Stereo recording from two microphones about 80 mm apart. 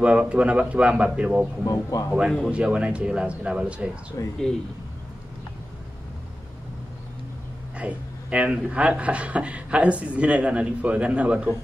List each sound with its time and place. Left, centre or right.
0.0 s speech: centre
1.6 s speech: left
2.0 s speech: centre
4.2 s speech: left
7.7 s speech: centre